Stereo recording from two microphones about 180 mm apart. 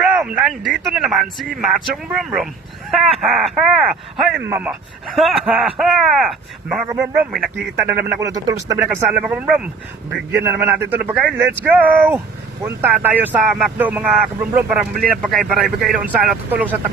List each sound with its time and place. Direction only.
0.1 s speech: 5° right (ahead or behind)
6.8 s speech: 15° right (ahead or behind)